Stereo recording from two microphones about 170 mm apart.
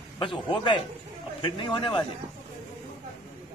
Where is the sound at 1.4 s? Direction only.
30° left (ahead or behind).